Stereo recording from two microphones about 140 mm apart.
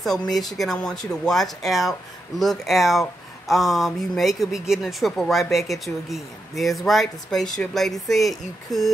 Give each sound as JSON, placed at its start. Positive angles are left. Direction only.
{"t": 0.3, "sound": "speech", "side_deg": 0}